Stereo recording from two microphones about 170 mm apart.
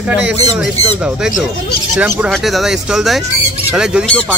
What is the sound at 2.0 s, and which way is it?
Speech, 5° right (ahead or behind).